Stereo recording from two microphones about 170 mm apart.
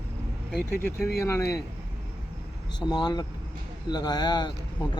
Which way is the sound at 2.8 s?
25° left (ahead or behind).